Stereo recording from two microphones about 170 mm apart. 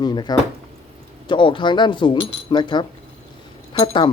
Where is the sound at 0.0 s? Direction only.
25° left (ahead or behind).